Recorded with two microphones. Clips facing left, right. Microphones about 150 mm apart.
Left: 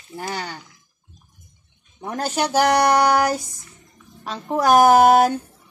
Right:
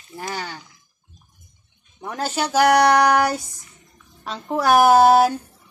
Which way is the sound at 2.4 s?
10° left (ahead or behind).